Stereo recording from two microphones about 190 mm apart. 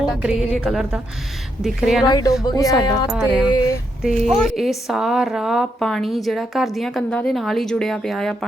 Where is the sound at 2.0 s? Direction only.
20° left (ahead or behind).